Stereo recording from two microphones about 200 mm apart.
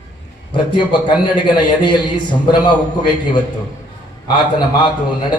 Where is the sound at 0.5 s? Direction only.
25° left (ahead or behind).